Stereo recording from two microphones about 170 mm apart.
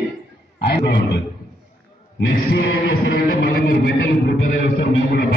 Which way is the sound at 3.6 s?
65° left (ahead or behind).